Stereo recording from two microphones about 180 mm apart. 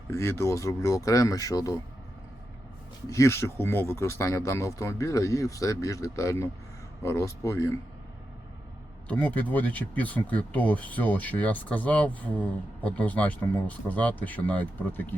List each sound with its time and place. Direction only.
0.1 s speech: 15° left (ahead or behind)
3.1 s speech: 15° left (ahead or behind)
9.0 s speech: 10° left (ahead or behind)